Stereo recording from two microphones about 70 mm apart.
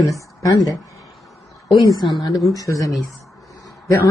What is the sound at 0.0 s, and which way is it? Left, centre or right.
Speech, left.